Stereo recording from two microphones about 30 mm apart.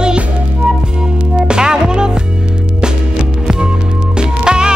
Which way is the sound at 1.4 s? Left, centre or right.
Right.